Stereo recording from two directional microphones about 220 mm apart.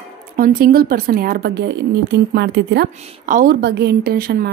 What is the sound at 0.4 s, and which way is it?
A woman's voice, 40° right (ahead or behind).